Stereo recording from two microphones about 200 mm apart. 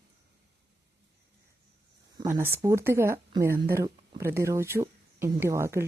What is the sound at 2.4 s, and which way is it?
Speech, 15° right (ahead or behind).